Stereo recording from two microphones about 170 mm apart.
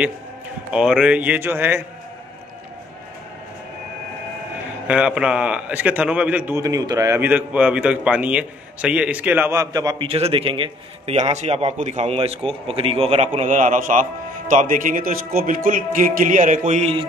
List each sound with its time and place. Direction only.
0.7 s a man's voice: 5° right (ahead or behind)
4.8 s a man's voice: 5° right (ahead or behind); by 10.0 s 20° right (ahead or behind)
10.0 s speech: 35° right (ahead or behind)